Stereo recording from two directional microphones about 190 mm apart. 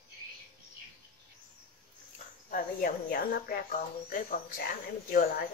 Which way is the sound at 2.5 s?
50° left (ahead or behind).